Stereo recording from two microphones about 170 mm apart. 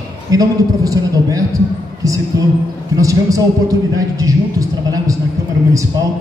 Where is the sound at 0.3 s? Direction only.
20° right (ahead or behind).